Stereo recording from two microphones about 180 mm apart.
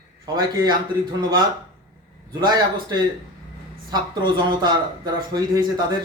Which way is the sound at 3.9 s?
25° right (ahead or behind).